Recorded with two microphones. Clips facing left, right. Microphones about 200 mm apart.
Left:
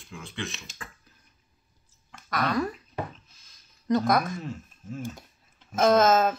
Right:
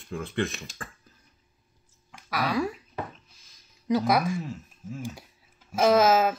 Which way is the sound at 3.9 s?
10° right (ahead or behind).